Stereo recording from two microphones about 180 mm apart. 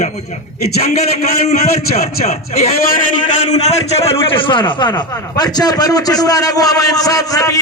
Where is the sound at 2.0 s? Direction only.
35° left (ahead or behind).